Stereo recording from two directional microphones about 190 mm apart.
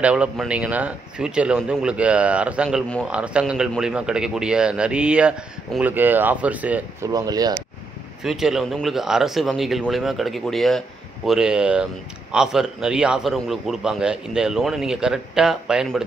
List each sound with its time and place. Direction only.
0.0 s a man's voice: 5° right (ahead or behind)
7.1 s speech: 20° right (ahead or behind)
8.2 s a man's voice: centre (ahead or behind)